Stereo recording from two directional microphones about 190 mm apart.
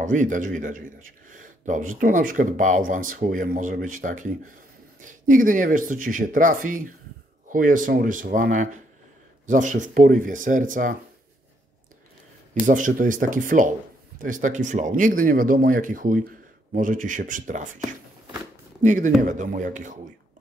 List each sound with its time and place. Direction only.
0.0 s speech: 40° right (ahead or behind)
12.6 s speech: 45° right (ahead or behind)
18.8 s speech: 40° right (ahead or behind)